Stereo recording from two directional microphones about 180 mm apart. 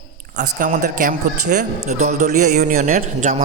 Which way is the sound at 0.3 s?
50° right (ahead or behind).